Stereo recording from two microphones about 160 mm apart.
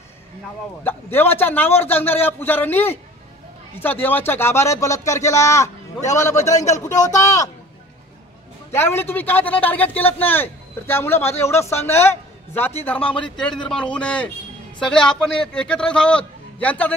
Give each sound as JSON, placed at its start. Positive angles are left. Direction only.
{"t": 0.8, "sound": "a man's voice", "side_deg": 15}
{"t": 8.7, "sound": "a man's voice", "side_deg": 15}